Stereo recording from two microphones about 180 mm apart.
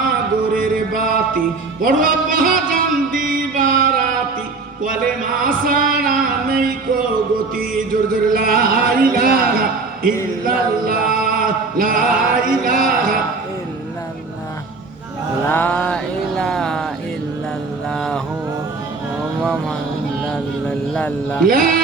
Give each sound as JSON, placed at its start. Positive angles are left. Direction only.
{"t": 0.5, "sound": "music", "side_deg": -50}
{"t": 5.4, "sound": "a sound", "side_deg": -50}
{"t": 10.4, "sound": "chant", "side_deg": -55}
{"t": 12.5, "sound": "speech", "side_deg": -50}
{"t": 15.4, "sound": "a sound", "side_deg": 10}
{"t": 17.9, "sound": "mantra", "side_deg": 5}
{"t": 20.3, "sound": "mantra", "side_deg": 5}
{"t": 21.4, "sound": "speech", "side_deg": -55}